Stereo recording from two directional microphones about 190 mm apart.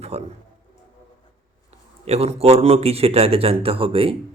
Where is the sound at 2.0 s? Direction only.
35° right (ahead or behind).